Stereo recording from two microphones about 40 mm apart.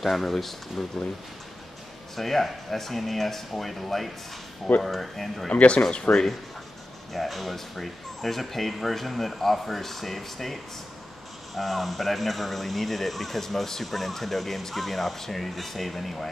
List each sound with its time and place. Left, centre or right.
0.0 s speech: centre
2.1 s speech: centre
5.5 s speech: left
5.8 s speech: left
7.1 s speech: centre